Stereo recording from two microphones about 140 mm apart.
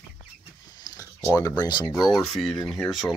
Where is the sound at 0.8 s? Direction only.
25° left (ahead or behind).